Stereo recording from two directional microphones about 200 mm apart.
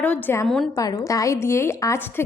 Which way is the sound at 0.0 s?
10° left (ahead or behind).